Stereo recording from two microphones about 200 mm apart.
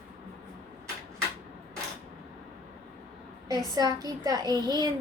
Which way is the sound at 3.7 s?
20° right (ahead or behind).